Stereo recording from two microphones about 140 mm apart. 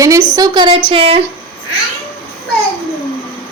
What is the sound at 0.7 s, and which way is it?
Speech, 45° right (ahead or behind).